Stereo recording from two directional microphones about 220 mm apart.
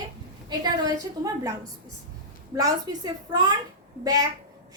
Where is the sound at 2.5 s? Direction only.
15° right (ahead or behind).